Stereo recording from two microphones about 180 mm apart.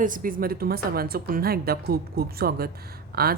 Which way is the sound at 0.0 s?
50° right (ahead or behind).